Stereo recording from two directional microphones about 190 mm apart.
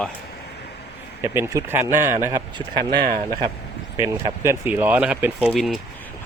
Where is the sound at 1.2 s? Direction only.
15° right (ahead or behind).